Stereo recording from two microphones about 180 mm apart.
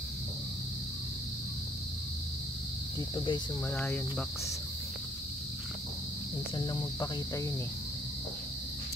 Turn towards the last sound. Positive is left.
turn(degrees=20)  # may be behind; listen again after turning